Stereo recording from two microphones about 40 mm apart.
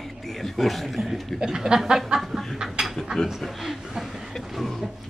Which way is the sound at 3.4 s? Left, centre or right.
Centre.